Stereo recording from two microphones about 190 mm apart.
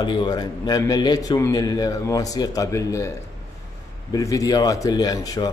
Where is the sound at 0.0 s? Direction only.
25° left (ahead or behind).